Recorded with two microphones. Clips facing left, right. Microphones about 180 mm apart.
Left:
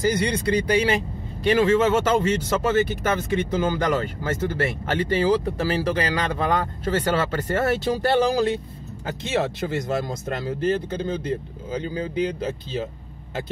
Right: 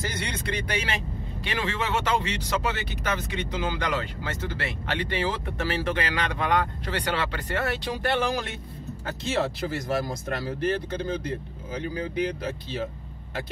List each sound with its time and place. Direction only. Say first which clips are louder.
0.3 s speech: left 9 dB; 35° left (ahead or behind)
9.7 s speech: left 2 dB; 25° left (ahead or behind)